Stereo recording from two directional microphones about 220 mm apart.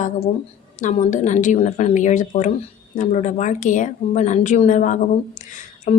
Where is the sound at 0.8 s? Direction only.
35° left (ahead or behind).